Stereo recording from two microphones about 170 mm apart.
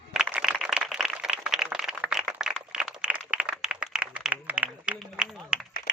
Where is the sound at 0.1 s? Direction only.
5° right (ahead or behind).